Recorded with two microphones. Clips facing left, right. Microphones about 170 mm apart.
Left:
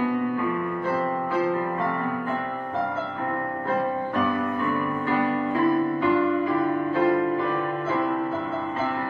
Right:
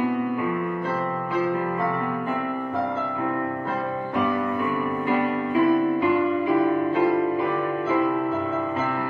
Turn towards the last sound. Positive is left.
turn(degrees=-15)  # may be behind; listen again after turning